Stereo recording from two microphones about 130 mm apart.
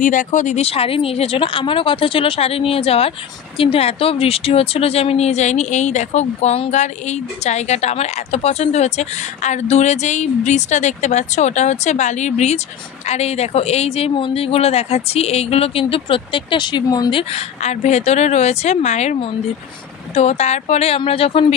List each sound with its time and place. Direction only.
0.0 s speech: 85° left
0.7 s speech: 45° left (ahead or behind)